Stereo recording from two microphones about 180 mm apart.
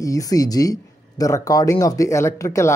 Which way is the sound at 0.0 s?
20° left (ahead or behind).